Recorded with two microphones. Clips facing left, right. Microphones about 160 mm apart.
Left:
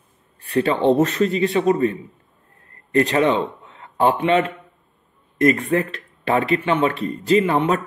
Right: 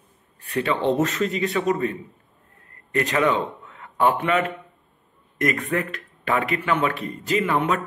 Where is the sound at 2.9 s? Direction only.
30° left (ahead or behind).